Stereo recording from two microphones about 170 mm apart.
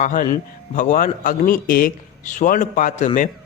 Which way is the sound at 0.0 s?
50° left (ahead or behind).